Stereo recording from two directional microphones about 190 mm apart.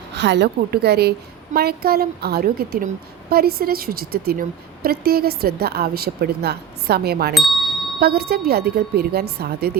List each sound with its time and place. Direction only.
0.1 s a woman's voice: 65° right (ahead or behind)